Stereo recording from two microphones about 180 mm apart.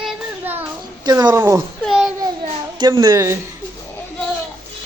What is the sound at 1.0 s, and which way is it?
Speech, 20° right (ahead or behind).